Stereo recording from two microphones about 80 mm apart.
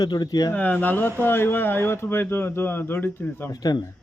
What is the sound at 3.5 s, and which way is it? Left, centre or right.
Speech, left.